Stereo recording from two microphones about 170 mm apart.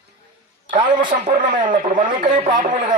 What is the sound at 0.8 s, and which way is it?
Speech, 35° right (ahead or behind).